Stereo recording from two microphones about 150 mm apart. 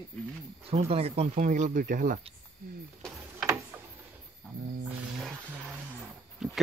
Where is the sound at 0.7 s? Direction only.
40° right (ahead or behind).